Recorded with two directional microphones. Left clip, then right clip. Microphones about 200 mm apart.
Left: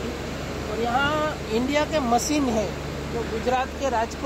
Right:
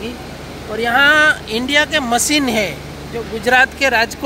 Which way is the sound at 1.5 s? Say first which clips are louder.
Right 8 dB; 5° right (ahead or behind).